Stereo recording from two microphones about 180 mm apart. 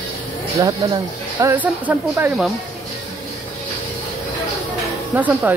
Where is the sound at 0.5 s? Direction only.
20° right (ahead or behind).